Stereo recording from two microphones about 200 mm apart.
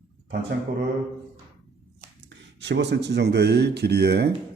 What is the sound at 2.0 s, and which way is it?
Speech, 60° right (ahead or behind).